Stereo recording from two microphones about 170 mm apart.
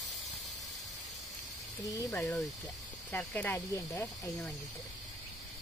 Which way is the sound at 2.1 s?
Centre (ahead or behind).